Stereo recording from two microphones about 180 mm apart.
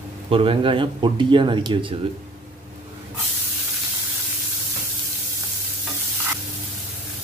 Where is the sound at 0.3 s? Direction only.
30° right (ahead or behind).